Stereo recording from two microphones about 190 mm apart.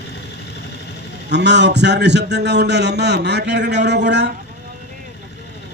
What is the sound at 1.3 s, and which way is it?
A man's voice, 65° right (ahead or behind).